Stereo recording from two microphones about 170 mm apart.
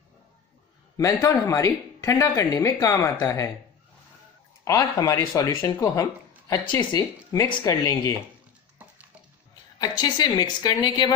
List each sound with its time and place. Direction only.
0.9 s speech: 20° left (ahead or behind)
4.6 s speech: 20° left (ahead or behind)
9.8 s speech: 25° left (ahead or behind)